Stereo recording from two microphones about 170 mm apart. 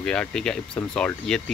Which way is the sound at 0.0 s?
5° left (ahead or behind).